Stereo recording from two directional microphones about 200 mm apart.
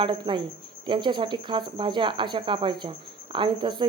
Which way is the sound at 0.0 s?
25° right (ahead or behind).